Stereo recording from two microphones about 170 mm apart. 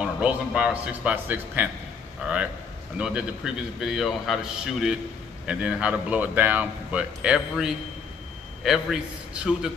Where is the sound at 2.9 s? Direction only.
5° right (ahead or behind).